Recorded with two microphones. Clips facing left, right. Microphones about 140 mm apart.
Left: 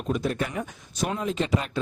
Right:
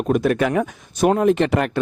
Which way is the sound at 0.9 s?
55° right (ahead or behind).